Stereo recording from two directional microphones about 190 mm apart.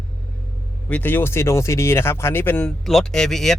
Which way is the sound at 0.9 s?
10° left (ahead or behind).